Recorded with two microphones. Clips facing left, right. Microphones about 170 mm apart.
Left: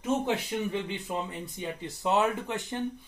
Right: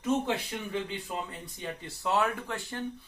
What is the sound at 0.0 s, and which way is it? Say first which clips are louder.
Speech: left 1 dB; 20° left (ahead or behind).